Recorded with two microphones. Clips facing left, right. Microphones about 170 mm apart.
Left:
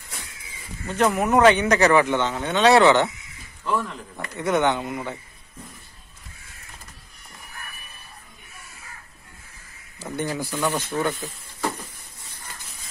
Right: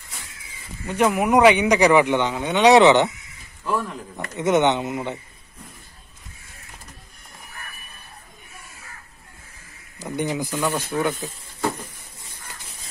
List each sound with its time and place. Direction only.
0.8 s speech: 10° right (ahead or behind)
4.3 s speech: 20° right (ahead or behind)
10.1 s speech: 15° right (ahead or behind)